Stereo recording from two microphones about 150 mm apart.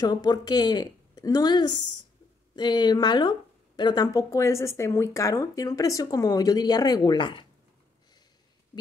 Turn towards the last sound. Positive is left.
turn(degrees=30)  # may be behind; listen again after turning